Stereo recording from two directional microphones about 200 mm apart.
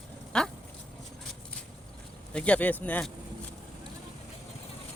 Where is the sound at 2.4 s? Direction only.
5° left (ahead or behind).